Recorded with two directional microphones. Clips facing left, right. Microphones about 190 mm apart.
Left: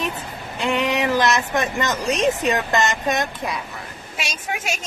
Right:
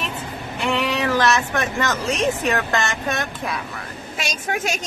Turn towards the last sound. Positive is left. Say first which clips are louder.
# right 3 dB
turn(degrees=5)  # may be behind; listen again after turning